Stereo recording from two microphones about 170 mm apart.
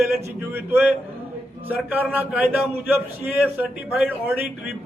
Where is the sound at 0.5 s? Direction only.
10° right (ahead or behind).